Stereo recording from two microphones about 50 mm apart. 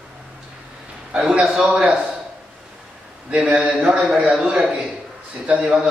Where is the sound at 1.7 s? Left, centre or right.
Right.